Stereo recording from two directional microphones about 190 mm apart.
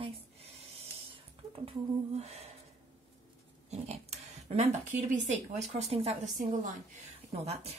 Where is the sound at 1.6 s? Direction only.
35° right (ahead or behind).